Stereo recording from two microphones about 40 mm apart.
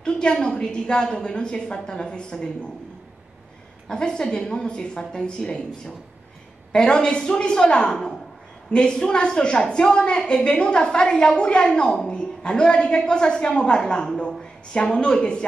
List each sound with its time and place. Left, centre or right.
0.0 s a woman's voice: left
3.9 s a woman's voice: left
6.7 s a woman's voice: left